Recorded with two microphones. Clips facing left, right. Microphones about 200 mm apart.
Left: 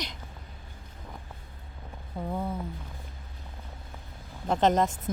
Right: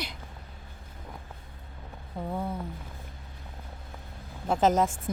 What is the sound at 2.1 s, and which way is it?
Speech, centre (ahead or behind).